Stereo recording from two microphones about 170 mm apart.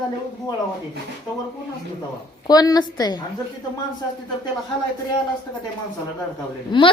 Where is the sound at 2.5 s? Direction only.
20° left (ahead or behind).